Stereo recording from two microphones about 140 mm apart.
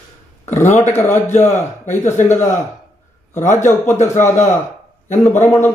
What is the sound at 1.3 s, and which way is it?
Speech, 60° left (ahead or behind).